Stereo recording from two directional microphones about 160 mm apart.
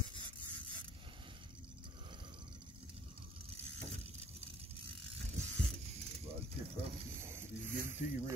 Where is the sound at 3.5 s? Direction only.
40° right (ahead or behind).